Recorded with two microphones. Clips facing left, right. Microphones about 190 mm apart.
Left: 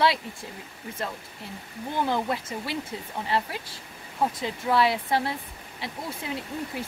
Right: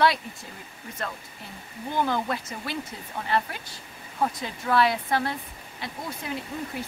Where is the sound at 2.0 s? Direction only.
25° left (ahead or behind).